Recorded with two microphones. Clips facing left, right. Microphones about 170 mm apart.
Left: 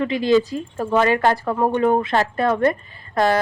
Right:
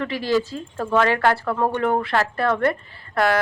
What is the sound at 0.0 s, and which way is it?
A woman's voice, 20° left (ahead or behind).